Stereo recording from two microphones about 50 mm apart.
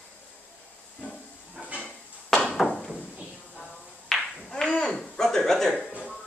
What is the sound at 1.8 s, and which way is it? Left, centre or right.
Dishes, centre.